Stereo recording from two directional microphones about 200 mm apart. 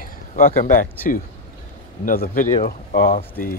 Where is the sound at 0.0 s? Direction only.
45° left (ahead or behind).